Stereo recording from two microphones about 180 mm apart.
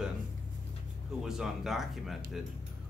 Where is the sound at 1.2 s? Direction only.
5° right (ahead or behind).